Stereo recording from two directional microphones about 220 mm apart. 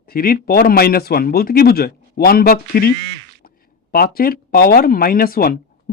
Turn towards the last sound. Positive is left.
turn(degrees=40)  # may be behind; listen again after turning